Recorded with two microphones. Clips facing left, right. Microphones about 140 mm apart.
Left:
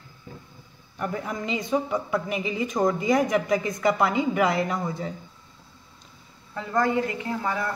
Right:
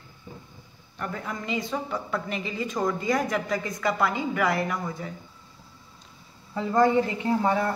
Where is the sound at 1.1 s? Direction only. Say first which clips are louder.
Left 1 dB; 20° left (ahead or behind).